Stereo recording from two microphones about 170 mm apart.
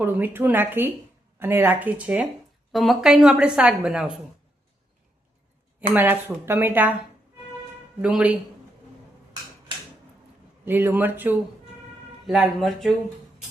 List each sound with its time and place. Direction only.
0.0 s a woman's voice: 10° right (ahead or behind)
5.9 s speech: 10° right (ahead or behind)
8.0 s speech: 5° right (ahead or behind)
10.7 s a woman's voice: 10° right (ahead or behind)